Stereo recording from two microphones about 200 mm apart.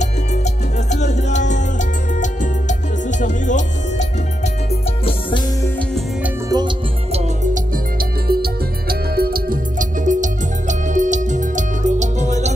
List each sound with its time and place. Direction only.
0.0 s music: 35° left (ahead or behind)
3.1 s music: 40° left (ahead or behind)
6.5 s music: 25° right (ahead or behind)
8.3 s music: 50° right (ahead or behind)